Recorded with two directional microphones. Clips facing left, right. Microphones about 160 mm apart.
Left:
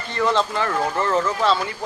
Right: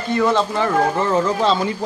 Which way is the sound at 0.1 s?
10° right (ahead or behind).